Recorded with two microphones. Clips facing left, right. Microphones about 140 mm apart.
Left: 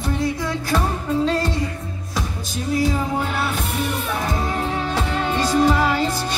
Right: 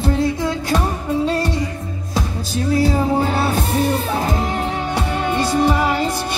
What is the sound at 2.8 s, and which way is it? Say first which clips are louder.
Music: right 4 dB; 30° right (ahead or behind).